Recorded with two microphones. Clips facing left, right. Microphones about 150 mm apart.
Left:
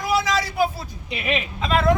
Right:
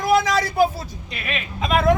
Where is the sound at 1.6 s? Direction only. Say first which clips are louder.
Right 2 dB; 10° right (ahead or behind).